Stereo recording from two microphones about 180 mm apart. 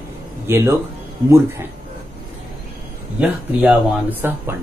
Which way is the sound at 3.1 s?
5° right (ahead or behind).